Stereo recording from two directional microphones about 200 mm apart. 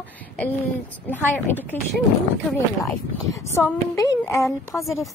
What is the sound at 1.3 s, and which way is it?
Speech, 10° left (ahead or behind).